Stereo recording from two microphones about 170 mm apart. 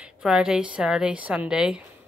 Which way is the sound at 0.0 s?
5° right (ahead or behind).